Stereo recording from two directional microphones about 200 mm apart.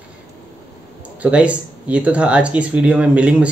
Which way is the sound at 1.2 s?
5° right (ahead or behind).